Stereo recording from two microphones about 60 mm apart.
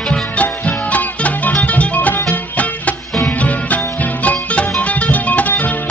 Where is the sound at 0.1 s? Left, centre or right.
Left.